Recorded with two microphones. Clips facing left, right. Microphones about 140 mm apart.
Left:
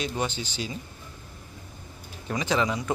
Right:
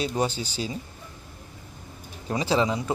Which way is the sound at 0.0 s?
35° right (ahead or behind).